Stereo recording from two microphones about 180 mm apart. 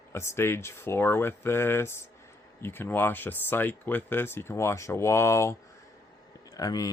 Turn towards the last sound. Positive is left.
turn(degrees=20)  # may be behind; listen again after turning